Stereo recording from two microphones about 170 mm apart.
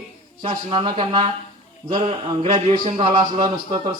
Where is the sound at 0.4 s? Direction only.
30° right (ahead or behind).